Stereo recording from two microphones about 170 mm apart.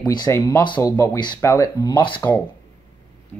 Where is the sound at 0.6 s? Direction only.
25° left (ahead or behind).